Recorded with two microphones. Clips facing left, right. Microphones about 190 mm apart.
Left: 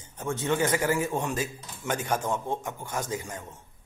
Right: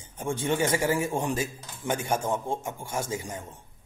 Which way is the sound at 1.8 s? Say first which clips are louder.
Right 1 dB; 30° right (ahead or behind).